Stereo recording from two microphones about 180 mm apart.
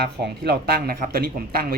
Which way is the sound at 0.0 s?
65° right (ahead or behind).